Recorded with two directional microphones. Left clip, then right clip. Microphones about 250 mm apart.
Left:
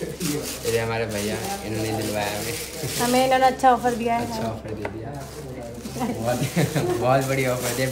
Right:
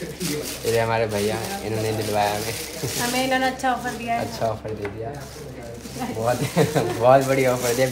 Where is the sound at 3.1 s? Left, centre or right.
Left.